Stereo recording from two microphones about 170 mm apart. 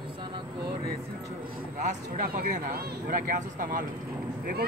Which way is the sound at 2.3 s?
55° right (ahead or behind).